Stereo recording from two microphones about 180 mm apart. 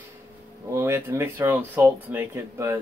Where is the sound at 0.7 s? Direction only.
15° right (ahead or behind).